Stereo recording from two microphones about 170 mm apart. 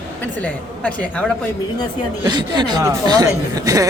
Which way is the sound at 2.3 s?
25° right (ahead or behind).